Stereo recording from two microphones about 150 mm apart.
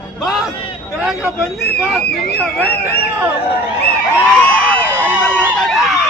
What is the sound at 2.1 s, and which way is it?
Speech, 90° left.